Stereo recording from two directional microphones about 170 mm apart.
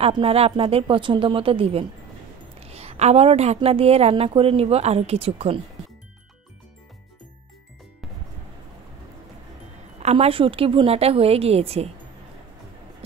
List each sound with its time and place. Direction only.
0.0 s a woman's voice: 35° right (ahead or behind)
9.9 s a woman's voice: 40° right (ahead or behind)